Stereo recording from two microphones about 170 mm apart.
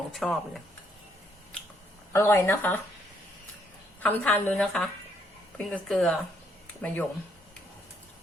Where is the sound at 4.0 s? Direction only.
10° left (ahead or behind).